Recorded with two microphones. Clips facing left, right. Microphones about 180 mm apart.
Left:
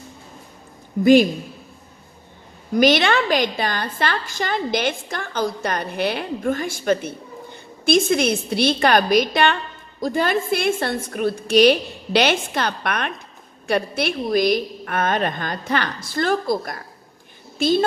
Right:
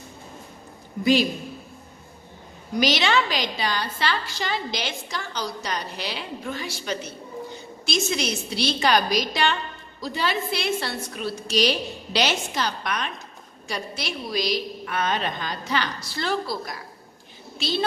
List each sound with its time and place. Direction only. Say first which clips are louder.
2.7 s a woman's voice: left 6 dB; 55° left (ahead or behind)